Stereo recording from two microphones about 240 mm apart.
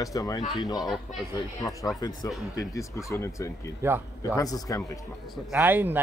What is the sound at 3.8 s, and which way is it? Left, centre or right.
Speech, centre.